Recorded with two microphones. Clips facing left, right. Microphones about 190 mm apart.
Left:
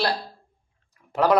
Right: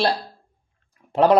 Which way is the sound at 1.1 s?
25° right (ahead or behind).